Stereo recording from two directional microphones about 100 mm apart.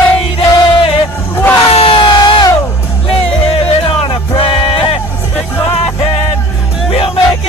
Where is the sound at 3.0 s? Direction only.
75° left (ahead or behind).